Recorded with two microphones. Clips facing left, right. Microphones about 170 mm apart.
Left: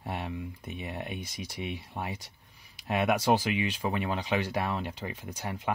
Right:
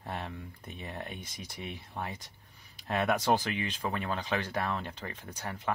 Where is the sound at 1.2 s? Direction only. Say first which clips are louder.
Left 5 dB; 90° left.